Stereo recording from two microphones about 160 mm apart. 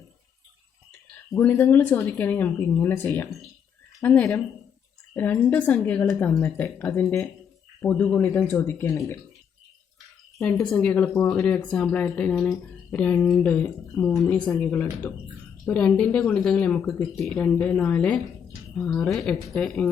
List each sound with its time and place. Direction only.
1.3 s speech: 15° left (ahead or behind)
10.3 s a woman's voice: 10° left (ahead or behind)